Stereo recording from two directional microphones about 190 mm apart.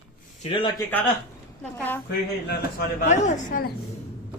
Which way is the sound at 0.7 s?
10° left (ahead or behind).